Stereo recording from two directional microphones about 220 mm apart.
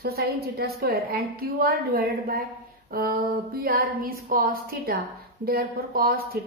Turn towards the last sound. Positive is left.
turn(degrees=-45)  # may be behind; listen again after turning